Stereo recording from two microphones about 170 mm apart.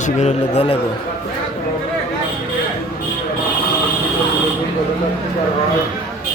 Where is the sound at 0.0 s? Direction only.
40° left (ahead or behind).